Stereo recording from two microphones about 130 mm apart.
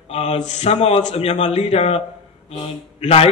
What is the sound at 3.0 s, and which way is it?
Speech, 55° left (ahead or behind).